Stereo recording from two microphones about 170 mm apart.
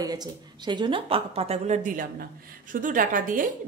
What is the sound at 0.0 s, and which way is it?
A woman's voice, 25° right (ahead or behind).